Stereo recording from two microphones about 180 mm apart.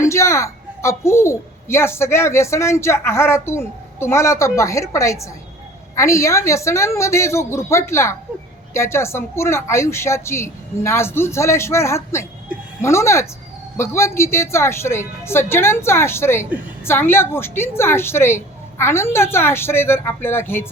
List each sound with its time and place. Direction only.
0.0 s a woman's voice: 15° left (ahead or behind)